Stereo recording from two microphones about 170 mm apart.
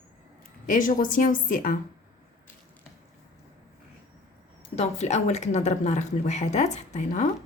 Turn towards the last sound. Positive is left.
turn(degrees=45)  # may be behind; listen again after turning